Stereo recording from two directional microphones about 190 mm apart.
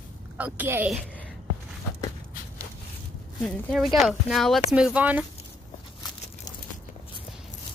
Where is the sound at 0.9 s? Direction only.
5° left (ahead or behind).